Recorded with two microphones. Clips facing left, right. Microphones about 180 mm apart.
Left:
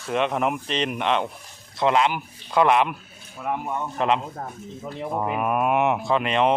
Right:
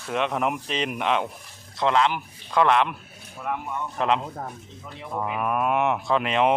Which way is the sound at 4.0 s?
Centre (ahead or behind).